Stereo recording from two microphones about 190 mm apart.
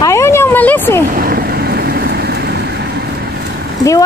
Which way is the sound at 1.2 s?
55° right (ahead or behind).